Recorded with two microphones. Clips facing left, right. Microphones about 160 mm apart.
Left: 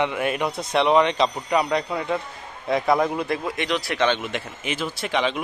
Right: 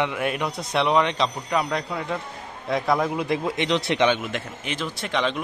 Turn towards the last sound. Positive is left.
turn(degrees=5)  # may be behind; listen again after turning